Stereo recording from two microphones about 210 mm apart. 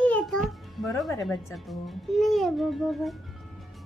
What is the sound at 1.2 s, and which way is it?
A child's voice, centre (ahead or behind).